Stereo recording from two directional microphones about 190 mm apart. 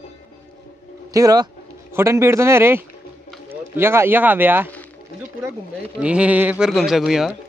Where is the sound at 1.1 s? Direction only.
20° right (ahead or behind).